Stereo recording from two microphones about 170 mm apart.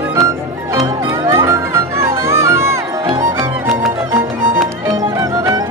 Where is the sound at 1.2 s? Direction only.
15° right (ahead or behind).